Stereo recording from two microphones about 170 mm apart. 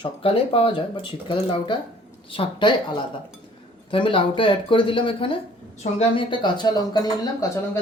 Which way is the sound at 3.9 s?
30° left (ahead or behind).